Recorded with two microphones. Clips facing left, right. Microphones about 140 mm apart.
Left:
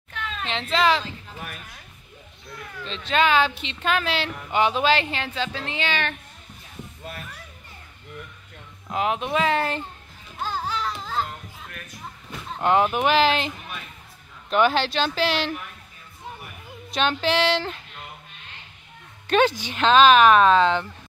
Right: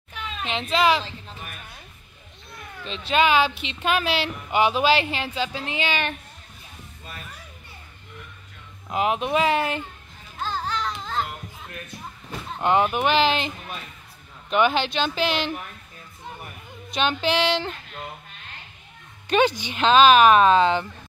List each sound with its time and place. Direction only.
0.1 s a sound: 15° right (ahead or behind)
2.8 s a woman's voice: 10° right (ahead or behind)
8.9 s a woman's voice: 20° right (ahead or behind)
10.4 s a sound: 10° left (ahead or behind)
11.7 s a sound: 25° right (ahead or behind)
12.5 s speech: centre (ahead or behind)
14.5 s speech: 5° right (ahead or behind)
16.9 s speech: centre (ahead or behind)
19.2 s speech: centre (ahead or behind)